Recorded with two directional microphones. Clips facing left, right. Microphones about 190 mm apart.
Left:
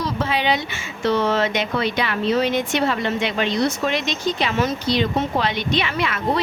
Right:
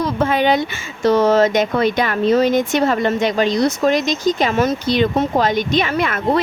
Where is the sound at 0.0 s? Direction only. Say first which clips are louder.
Right 6 dB; 50° right (ahead or behind).